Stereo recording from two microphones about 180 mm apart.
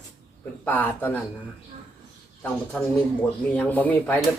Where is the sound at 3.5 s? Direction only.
10° left (ahead or behind).